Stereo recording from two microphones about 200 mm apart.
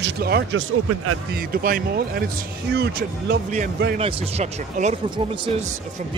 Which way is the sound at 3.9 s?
35° right (ahead or behind).